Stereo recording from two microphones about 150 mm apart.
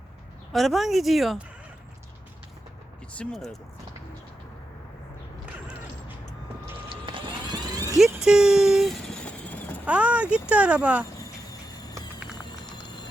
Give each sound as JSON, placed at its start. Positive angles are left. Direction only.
{"t": 0.5, "sound": "speech", "side_deg": 0}
{"t": 3.1, "sound": "speech", "side_deg": 5}
{"t": 6.8, "sound": "vehicle", "side_deg": -35}
{"t": 7.9, "sound": "vehicle", "side_deg": 0}
{"t": 9.8, "sound": "speech", "side_deg": -10}
{"t": 12.4, "sound": "a sound", "side_deg": 30}